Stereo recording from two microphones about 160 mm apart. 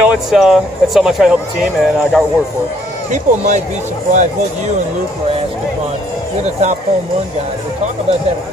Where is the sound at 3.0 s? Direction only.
50° right (ahead or behind).